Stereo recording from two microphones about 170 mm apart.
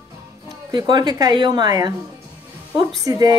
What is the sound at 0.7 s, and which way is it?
Speech, 25° right (ahead or behind).